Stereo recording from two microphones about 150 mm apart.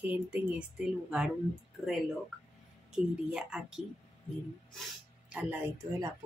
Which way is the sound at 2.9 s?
5° right (ahead or behind).